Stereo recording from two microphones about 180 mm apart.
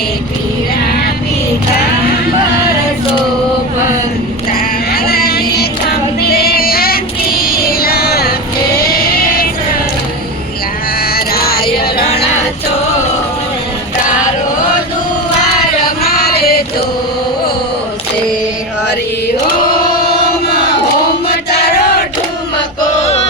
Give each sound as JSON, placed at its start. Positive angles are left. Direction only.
{"t": 4.5, "sound": "female singing", "side_deg": 55}
{"t": 8.9, "sound": "child singing", "side_deg": 55}
{"t": 11.0, "sound": "music", "side_deg": 55}
{"t": 16.0, "sound": "a sound", "side_deg": 60}